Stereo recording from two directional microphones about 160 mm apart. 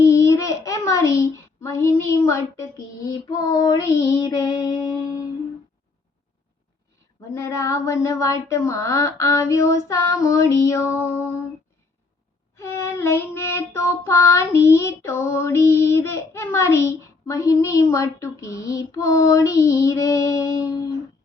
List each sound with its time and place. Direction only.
0.0 s a child's voice: 20° left (ahead or behind)
7.3 s child singing: 20° left (ahead or behind)
10.9 s music: 15° left (ahead or behind)
12.5 s child singing: 15° left (ahead or behind)